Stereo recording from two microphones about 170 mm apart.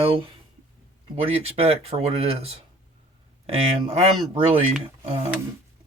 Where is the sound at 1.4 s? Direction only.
40° right (ahead or behind).